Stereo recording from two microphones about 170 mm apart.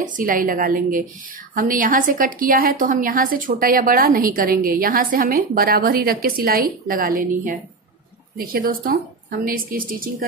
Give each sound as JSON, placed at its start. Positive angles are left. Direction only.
{"t": 0.0, "sound": "a woman's voice", "side_deg": -50}